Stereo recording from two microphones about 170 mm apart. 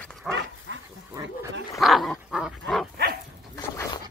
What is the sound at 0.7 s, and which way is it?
Dog, 90° right.